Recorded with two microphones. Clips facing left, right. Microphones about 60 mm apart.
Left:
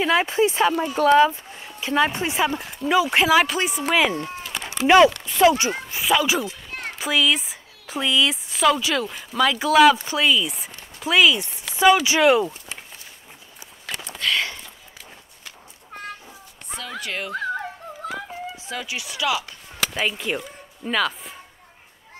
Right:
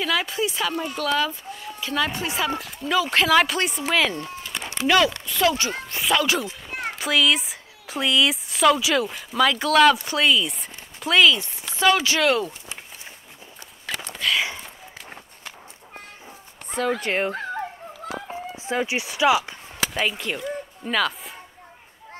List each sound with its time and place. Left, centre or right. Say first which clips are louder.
0.0 s speech: left 5 dB; left; by 4.2 s centre
4.2 s a sound: left 2 dB; left
4.8 s speech: left 6 dB; left
5.9 s speech: left 1 dB; centre
6.7 s children playing: right 3 dB; centre
7.0 s a woman's voice: even; centre
14.2 s a sound: even; centre
16.7 s speech: right 7 dB; right
18.1 s a sound: even; right
19.9 s speech: left 1 dB; centre